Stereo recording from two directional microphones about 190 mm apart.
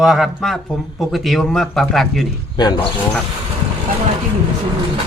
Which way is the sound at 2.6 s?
20° left (ahead or behind).